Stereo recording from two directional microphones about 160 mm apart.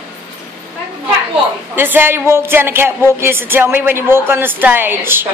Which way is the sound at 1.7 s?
10° right (ahead or behind).